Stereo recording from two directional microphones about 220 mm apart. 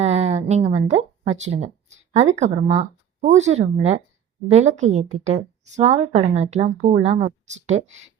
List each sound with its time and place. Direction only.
0.0 s speech: 30° right (ahead or behind)